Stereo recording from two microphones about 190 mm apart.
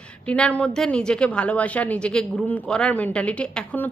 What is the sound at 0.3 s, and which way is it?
A woman's voice, 5° left (ahead or behind).